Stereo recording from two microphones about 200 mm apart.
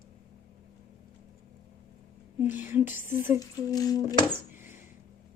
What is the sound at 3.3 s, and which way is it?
Humming, 20° left (ahead or behind).